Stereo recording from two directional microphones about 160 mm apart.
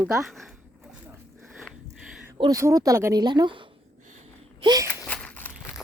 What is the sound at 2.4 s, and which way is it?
A woman's voice, 25° right (ahead or behind).